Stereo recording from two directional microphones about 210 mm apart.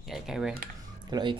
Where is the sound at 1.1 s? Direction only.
20° right (ahead or behind).